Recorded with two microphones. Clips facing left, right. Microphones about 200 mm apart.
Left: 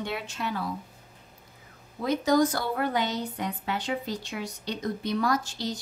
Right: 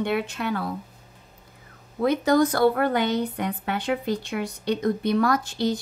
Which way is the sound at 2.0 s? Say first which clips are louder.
Right 3 dB; 60° right (ahead or behind).